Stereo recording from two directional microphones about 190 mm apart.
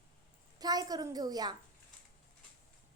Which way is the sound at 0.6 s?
20° right (ahead or behind).